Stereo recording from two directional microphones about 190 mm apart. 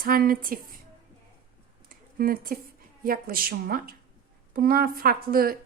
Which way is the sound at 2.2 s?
50° right (ahead or behind).